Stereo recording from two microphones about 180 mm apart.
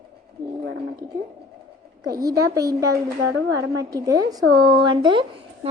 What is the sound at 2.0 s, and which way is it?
A woman's voice, 20° right (ahead or behind).